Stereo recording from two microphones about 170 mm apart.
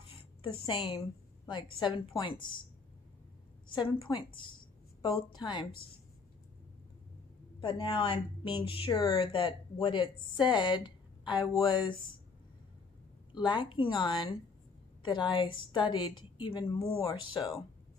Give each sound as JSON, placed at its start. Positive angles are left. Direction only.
{"t": 0.1, "sound": "a sound", "side_deg": 30}
{"t": 1.5, "sound": "speech", "side_deg": 25}
{"t": 3.7, "sound": "speech", "side_deg": 30}
{"t": 7.6, "sound": "speech", "side_deg": 30}
{"t": 13.3, "sound": "speech", "side_deg": 25}